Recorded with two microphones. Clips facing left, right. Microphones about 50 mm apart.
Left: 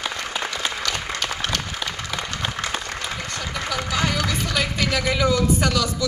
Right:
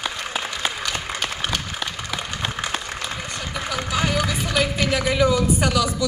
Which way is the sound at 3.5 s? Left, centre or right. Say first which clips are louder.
Even; centre.